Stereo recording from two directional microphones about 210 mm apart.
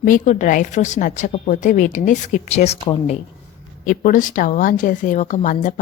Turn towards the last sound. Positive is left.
turn(degrees=35)  # may be behind; listen again after turning